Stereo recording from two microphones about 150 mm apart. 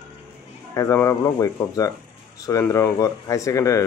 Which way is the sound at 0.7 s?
20° left (ahead or behind).